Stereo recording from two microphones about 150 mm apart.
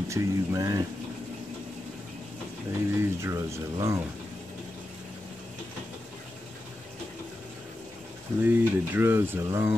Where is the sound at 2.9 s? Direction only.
20° right (ahead or behind).